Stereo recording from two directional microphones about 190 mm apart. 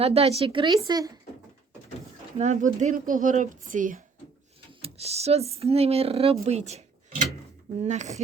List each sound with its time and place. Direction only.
0.0 s speech: 30° right (ahead or behind)
2.4 s speech: 40° right (ahead or behind)
4.7 s a woman's voice: 30° right (ahead or behind)